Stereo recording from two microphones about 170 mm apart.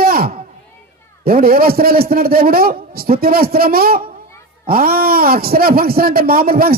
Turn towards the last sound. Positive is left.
turn(degrees=-60)  # may be behind; listen again after turning